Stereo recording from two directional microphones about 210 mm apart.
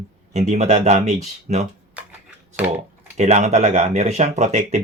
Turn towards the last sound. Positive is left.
turn(degrees=-35)  # may be behind; listen again after turning